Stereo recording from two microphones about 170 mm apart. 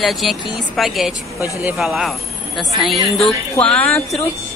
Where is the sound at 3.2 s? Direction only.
35° left (ahead or behind).